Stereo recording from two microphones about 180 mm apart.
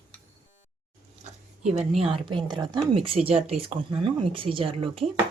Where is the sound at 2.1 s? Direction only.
25° right (ahead or behind).